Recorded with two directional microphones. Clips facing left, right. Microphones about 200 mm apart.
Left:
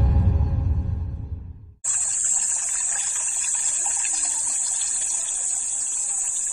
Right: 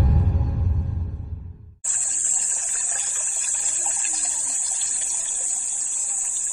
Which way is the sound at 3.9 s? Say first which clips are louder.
Right 1 dB; 35° right (ahead or behind).